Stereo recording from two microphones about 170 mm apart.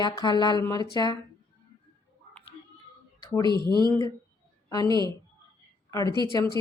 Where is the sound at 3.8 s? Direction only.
20° left (ahead or behind).